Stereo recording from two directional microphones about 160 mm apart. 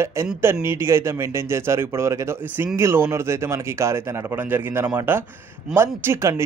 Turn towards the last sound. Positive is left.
turn(degrees=-15)  # may be behind; listen again after turning